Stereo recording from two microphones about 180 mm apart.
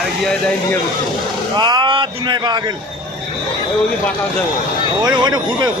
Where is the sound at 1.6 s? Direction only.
25° right (ahead or behind).